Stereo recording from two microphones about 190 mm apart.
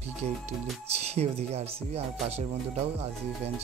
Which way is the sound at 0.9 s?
35° right (ahead or behind).